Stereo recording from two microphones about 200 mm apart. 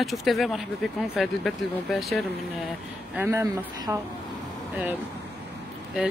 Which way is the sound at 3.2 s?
10° right (ahead or behind).